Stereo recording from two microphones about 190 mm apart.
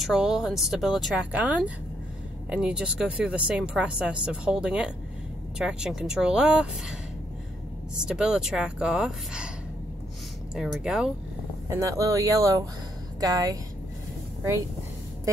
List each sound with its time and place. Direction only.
0.0 s speech: 5° right (ahead or behind)
10.5 s speech: 5° right (ahead or behind)
11.7 s speech: 15° right (ahead or behind)